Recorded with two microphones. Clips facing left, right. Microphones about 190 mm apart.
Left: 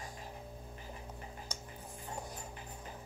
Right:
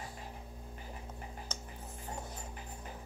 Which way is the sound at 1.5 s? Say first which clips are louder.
Right 1 dB; 10° left (ahead or behind).